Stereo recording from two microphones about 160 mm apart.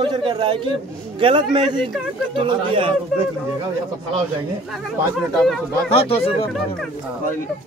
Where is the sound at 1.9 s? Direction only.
Centre (ahead or behind).